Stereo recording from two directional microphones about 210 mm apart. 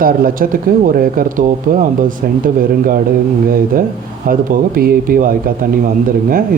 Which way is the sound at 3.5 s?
40° right (ahead or behind).